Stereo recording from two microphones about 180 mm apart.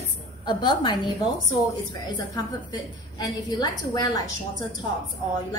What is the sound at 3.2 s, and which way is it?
A woman's voice, 25° left (ahead or behind).